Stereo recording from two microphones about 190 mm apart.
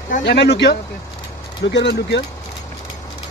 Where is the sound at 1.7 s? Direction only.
65° left (ahead or behind).